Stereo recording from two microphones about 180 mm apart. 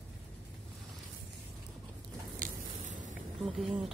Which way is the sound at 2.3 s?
45° right (ahead or behind).